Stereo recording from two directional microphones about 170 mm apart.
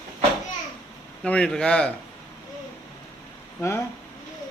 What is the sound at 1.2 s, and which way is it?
Speech, 5° left (ahead or behind).